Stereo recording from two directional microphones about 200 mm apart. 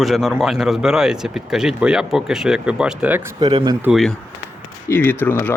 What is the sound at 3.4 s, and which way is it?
Speech, 20° right (ahead or behind).